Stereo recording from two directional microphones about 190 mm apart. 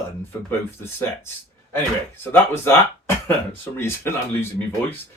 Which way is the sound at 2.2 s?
10° left (ahead or behind).